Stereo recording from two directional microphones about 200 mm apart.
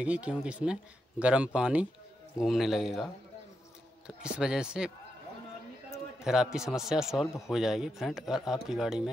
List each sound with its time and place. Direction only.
0.0 s a man's voice: 5° right (ahead or behind)
4.2 s a man's voice: 5° right (ahead or behind)
6.2 s a man's voice: 5° right (ahead or behind)